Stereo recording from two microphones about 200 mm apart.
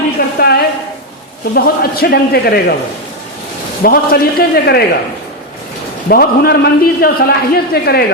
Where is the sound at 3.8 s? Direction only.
50° left (ahead or behind).